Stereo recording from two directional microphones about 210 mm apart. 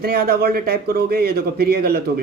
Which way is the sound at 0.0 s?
45° right (ahead or behind).